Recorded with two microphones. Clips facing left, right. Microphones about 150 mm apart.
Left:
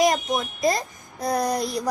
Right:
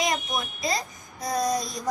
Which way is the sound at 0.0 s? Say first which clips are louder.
Left 7 dB; 45° left (ahead or behind).